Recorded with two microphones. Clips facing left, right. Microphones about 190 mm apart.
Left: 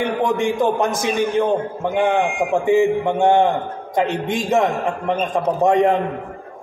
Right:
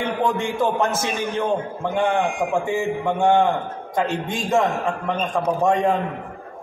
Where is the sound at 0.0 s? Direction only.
15° left (ahead or behind).